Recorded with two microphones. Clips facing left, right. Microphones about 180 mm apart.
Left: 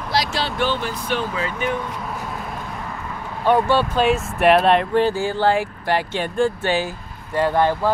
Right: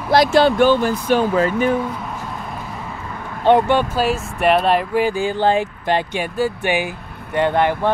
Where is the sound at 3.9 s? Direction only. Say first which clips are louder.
Left 1 dB; centre (ahead or behind); by 6.2 s 20° right (ahead or behind).